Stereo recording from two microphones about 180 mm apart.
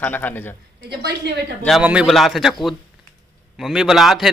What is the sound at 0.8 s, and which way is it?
Speech, 65° right (ahead or behind).